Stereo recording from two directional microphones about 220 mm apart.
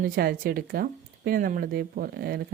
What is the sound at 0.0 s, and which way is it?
Speech, 45° right (ahead or behind).